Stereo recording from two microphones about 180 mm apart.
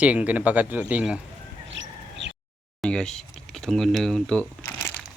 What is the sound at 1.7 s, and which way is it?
Bird, 90° right.